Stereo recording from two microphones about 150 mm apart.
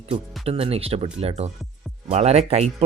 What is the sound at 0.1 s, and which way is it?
Speech, 40° right (ahead or behind).